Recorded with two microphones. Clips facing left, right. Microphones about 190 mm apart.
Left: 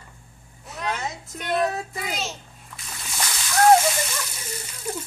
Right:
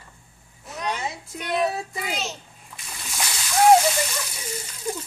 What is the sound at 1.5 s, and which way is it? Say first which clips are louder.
Speech: even; 5° right (ahead or behind).